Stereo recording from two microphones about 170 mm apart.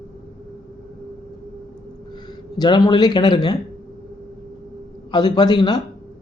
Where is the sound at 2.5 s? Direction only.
25° left (ahead or behind).